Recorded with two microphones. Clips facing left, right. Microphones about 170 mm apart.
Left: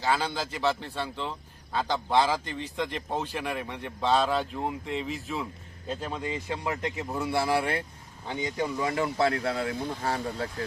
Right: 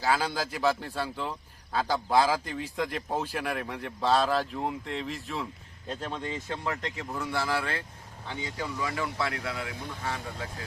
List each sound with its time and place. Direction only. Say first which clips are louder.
0.0 s a man's voice: even; 5° right (ahead or behind); by 10.5 s 35° left (ahead or behind)